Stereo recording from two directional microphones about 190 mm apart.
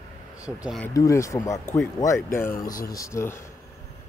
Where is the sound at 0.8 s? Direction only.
15° left (ahead or behind).